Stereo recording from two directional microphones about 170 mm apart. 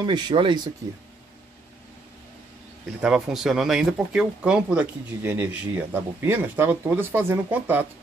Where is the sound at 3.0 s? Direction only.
5° right (ahead or behind).